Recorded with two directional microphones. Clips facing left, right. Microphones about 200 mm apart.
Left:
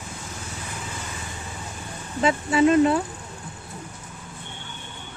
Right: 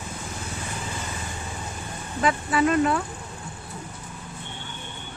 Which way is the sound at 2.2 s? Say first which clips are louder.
Left 3 dB; 25° left (ahead or behind).